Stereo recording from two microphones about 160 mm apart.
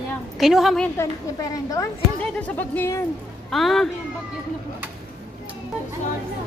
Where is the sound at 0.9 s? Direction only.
20° left (ahead or behind).